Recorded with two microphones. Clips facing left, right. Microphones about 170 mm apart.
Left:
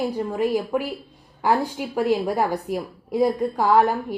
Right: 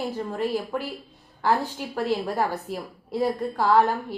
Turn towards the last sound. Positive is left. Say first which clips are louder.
# left 2 dB
turn(degrees=15)  # may be behind; listen again after turning